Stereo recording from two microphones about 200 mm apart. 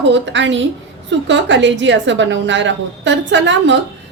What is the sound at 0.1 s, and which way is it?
A woman's voice, 65° right (ahead or behind).